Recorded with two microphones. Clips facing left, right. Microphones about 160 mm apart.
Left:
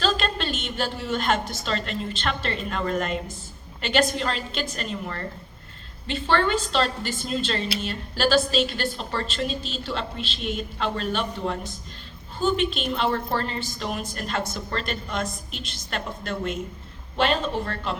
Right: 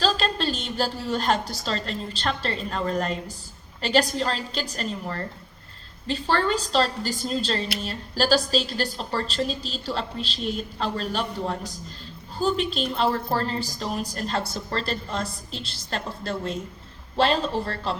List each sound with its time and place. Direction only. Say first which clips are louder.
0.0 s a woman's voice: right 1 dB; 35° right (ahead or behind)